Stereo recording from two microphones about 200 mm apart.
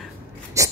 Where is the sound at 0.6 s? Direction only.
15° right (ahead or behind).